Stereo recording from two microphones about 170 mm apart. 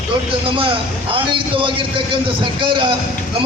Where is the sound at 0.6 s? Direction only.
30° right (ahead or behind).